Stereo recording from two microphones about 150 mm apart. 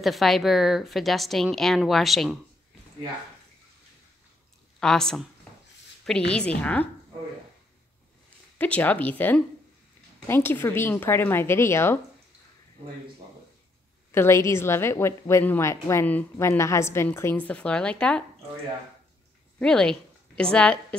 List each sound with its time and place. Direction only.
0.0 s a woman's voice: centre (ahead or behind)
4.7 s speech: 5° left (ahead or behind)
6.3 s a woman's voice: 10° left (ahead or behind)
8.5 s a woman's voice: 10° left (ahead or behind)
14.1 s a woman's voice: 15° left (ahead or behind)
19.6 s a sound: 5° left (ahead or behind)
20.5 s a woman's voice: 10° left (ahead or behind)